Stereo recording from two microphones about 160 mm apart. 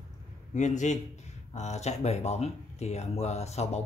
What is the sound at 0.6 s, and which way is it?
Speech, 50° left (ahead or behind).